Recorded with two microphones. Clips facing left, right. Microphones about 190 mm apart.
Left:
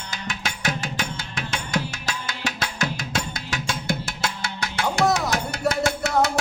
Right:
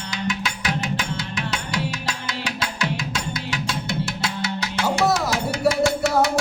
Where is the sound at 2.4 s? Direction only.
45° left (ahead or behind).